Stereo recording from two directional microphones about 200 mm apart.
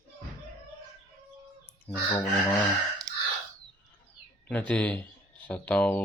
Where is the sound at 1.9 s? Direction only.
5° left (ahead or behind).